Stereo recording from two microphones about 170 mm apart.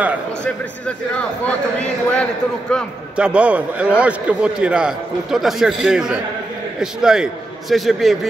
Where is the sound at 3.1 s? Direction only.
5° right (ahead or behind).